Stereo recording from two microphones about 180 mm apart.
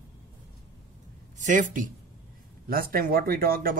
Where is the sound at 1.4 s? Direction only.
45° right (ahead or behind).